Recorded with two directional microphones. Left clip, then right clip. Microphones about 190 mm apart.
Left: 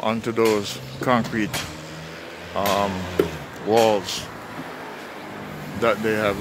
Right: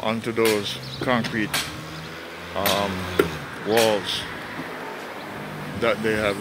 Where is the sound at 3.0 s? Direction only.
45° right (ahead or behind).